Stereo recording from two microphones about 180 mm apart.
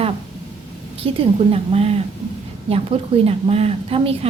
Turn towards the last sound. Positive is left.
turn(degrees=-30)  # may be behind; listen again after turning